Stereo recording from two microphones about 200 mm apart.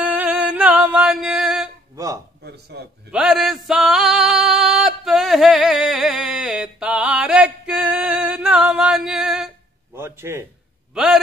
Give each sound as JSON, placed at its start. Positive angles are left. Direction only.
{"t": 0.0, "sound": "music", "side_deg": -5}
{"t": 2.4, "sound": "speech", "side_deg": -55}
{"t": 3.1, "sound": "a sound", "side_deg": -5}
{"t": 9.9, "sound": "a man's voice", "side_deg": -10}